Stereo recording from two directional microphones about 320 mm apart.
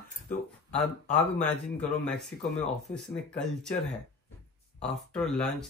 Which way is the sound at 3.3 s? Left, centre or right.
Centre.